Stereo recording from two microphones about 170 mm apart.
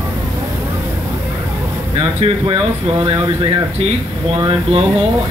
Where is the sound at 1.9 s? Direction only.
35° right (ahead or behind).